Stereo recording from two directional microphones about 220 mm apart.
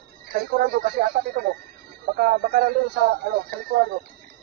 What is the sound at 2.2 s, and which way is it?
Speech, 45° right (ahead or behind).